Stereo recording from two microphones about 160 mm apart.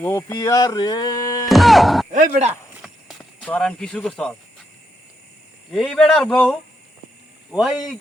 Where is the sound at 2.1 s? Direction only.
45° right (ahead or behind).